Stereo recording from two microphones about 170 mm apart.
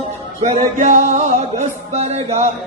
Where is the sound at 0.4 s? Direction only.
45° right (ahead or behind).